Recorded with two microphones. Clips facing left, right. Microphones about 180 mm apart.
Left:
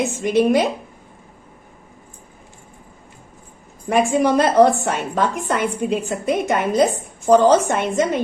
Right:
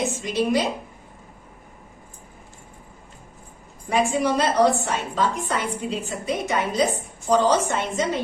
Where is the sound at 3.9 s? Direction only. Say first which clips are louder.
Left 5 dB; 50° left (ahead or behind).